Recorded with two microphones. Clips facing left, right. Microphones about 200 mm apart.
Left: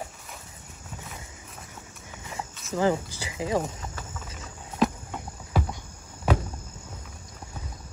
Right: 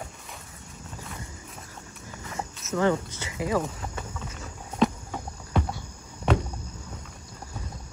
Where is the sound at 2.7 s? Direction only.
30° left (ahead or behind).